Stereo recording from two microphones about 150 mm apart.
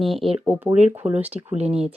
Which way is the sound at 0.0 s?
Centre (ahead or behind).